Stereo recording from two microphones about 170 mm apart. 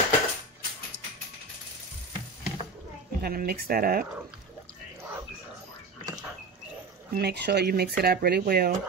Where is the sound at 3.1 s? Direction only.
60° right (ahead or behind).